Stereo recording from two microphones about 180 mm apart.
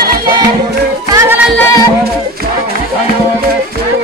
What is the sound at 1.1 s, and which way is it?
Music, 15° right (ahead or behind).